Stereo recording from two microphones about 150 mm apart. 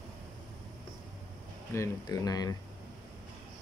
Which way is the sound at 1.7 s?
20° left (ahead or behind).